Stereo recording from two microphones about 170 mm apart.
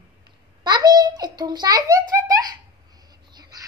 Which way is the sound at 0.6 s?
25° right (ahead or behind).